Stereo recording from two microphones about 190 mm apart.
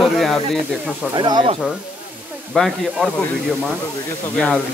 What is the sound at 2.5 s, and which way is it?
Speech, centre (ahead or behind).